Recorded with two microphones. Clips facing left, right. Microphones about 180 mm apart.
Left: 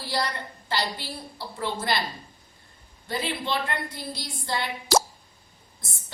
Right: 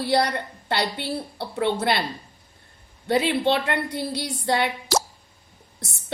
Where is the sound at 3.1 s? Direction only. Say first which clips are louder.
Right 8 dB; 70° right (ahead or behind).